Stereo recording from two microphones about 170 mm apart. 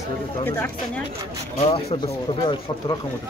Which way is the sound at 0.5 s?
10° left (ahead or behind).